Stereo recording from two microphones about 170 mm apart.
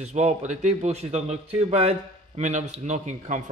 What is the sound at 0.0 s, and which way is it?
A man's voice, 40° right (ahead or behind).